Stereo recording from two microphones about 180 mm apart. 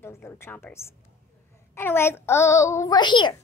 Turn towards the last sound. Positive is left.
turn(degrees=25)  # may be behind; listen again after turning